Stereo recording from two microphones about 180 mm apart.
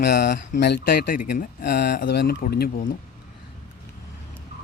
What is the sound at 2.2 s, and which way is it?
Speech, 60° left (ahead or behind).